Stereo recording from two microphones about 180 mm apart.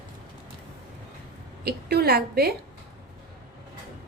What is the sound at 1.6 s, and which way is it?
Speech, 60° right (ahead or behind).